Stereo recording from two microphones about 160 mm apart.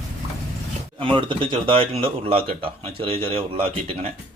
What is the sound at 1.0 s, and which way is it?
Speech, 30° right (ahead or behind).